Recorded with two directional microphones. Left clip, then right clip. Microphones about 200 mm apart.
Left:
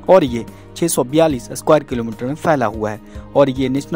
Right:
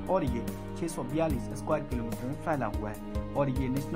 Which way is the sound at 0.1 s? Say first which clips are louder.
Left 18 dB; 50° left (ahead or behind).